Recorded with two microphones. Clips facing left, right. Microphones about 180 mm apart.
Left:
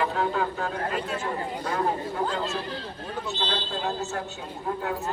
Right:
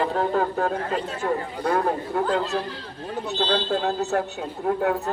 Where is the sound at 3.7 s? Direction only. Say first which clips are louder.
Right 7 dB; 60° right (ahead or behind).